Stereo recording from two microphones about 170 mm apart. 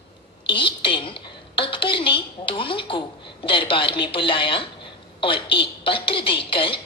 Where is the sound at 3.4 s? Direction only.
30° left (ahead or behind).